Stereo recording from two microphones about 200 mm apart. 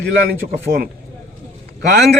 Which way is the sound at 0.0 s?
55° right (ahead or behind).